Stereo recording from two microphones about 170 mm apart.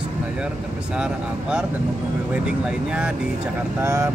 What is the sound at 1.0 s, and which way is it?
Speech, 5° right (ahead or behind).